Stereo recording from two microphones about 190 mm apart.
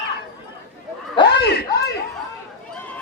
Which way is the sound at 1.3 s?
60° left (ahead or behind).